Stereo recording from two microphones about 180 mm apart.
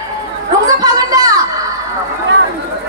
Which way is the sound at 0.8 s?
20° right (ahead or behind).